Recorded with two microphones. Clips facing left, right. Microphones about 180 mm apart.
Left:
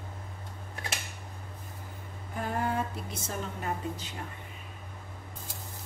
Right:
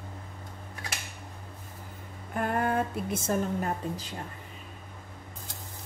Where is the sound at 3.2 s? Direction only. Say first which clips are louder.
Right 6 dB; 40° right (ahead or behind).